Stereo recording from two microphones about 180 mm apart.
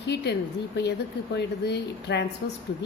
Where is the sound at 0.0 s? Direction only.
70° left (ahead or behind).